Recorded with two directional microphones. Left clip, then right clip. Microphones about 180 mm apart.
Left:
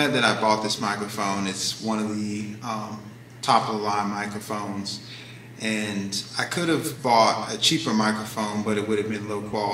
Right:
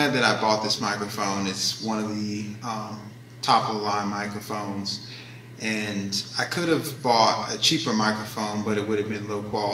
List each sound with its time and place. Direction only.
0.0 s speech: 10° left (ahead or behind)